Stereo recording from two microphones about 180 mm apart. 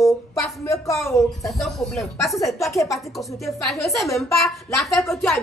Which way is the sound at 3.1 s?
Centre (ahead or behind).